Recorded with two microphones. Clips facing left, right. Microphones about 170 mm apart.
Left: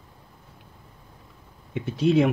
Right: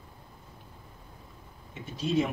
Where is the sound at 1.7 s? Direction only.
65° left (ahead or behind).